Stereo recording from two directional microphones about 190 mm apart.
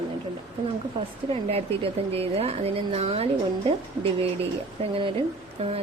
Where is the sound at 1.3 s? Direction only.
30° right (ahead or behind).